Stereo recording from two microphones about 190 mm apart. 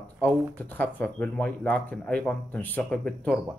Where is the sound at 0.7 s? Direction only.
10° left (ahead or behind).